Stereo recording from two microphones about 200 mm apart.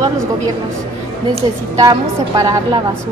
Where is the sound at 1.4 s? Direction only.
15° right (ahead or behind).